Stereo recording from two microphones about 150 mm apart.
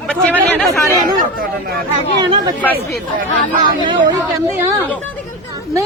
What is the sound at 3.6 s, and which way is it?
Speech, 35° right (ahead or behind).